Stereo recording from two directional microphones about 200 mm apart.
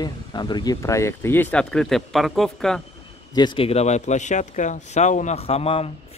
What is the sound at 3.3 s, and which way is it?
Speech, 25° left (ahead or behind).